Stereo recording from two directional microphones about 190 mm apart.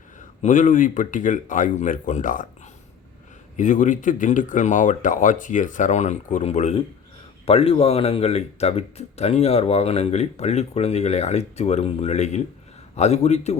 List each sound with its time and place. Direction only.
0.4 s speech: 40° left (ahead or behind)
3.6 s speech: 40° left (ahead or behind)